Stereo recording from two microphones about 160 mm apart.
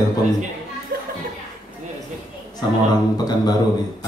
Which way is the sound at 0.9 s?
65° right (ahead or behind).